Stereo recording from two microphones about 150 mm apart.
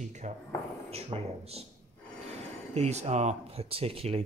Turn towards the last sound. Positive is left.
turn(degrees=-40)  # may be behind; listen again after turning